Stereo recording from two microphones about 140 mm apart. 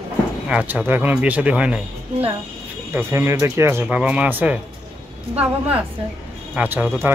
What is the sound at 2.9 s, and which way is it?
Speech, 15° right (ahead or behind).